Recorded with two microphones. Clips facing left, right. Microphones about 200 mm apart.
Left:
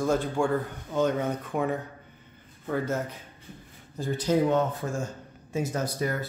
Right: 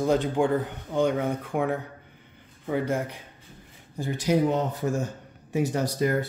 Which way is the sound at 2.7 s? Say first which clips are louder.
Right 2 dB; 15° right (ahead or behind).